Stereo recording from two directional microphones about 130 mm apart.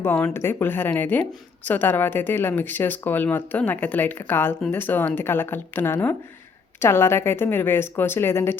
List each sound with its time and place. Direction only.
0.0 s speech: 15° left (ahead or behind)